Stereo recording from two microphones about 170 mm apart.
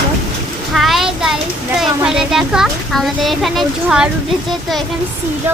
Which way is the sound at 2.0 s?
5° right (ahead or behind).